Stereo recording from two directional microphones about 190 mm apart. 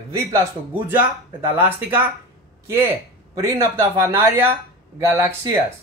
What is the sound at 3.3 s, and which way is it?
Speech, 15° right (ahead or behind).